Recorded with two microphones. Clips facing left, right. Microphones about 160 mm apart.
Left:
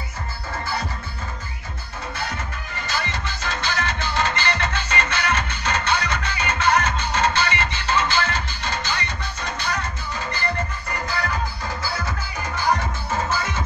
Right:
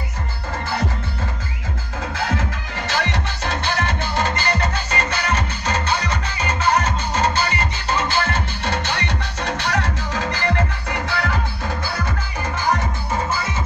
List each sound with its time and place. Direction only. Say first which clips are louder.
2.1 s music: right 7 dB; 90° right; by 11.3 s 75° right (ahead or behind)